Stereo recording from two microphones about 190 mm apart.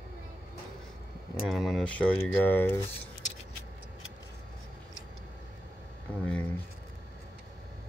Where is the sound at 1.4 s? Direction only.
Centre (ahead or behind).